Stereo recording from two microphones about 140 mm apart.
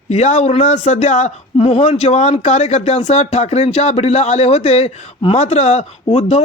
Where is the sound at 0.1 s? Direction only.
55° left (ahead or behind).